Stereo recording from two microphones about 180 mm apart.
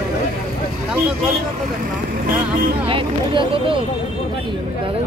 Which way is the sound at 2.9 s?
30° right (ahead or behind).